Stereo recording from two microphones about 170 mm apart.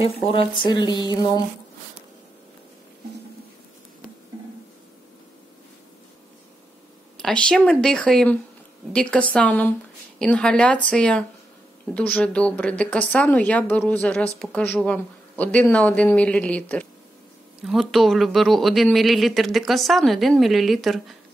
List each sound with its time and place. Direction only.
0.0 s speech: 30° left (ahead or behind)
7.2 s speech: 5° left (ahead or behind)